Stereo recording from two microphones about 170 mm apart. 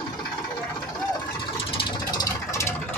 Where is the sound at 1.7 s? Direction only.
20° left (ahead or behind).